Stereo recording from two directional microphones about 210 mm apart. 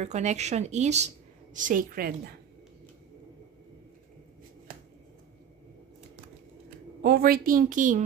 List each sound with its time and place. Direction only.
0.0 s a woman's voice: 35° right (ahead or behind)
7.0 s a woman's voice: 45° right (ahead or behind)